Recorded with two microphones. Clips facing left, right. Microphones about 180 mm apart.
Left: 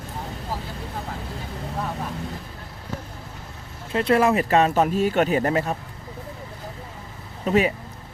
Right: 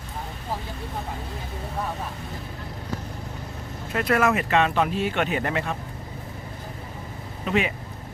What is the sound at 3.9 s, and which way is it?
A man's voice, 30° left (ahead or behind).